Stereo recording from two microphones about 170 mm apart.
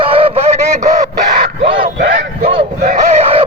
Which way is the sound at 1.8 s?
65° right (ahead or behind).